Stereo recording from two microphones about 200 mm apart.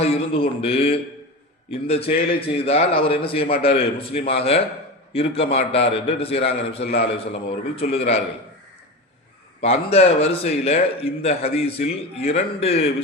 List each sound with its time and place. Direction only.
0.0 s a man's voice: 30° left (ahead or behind)
9.6 s a man's voice: 30° left (ahead or behind)